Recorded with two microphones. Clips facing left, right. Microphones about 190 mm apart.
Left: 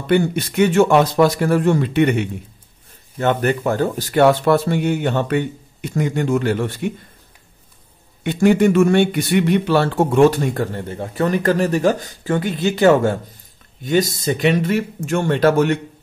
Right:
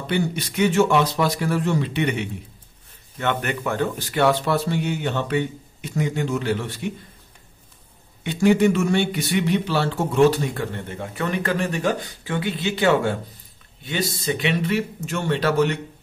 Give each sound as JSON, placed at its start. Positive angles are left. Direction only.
{"t": 0.0, "sound": "speech", "side_deg": 50}
{"t": 3.2, "sound": "speech", "side_deg": 40}
{"t": 8.2, "sound": "speech", "side_deg": 55}